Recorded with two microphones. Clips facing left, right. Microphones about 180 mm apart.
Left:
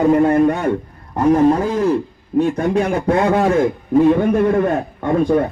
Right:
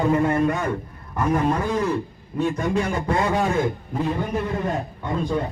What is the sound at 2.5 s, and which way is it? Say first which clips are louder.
A man's voice: left 6 dB; 55° left (ahead or behind).